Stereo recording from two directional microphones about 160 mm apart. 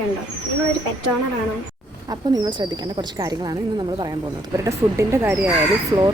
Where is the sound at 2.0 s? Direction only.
25° right (ahead or behind).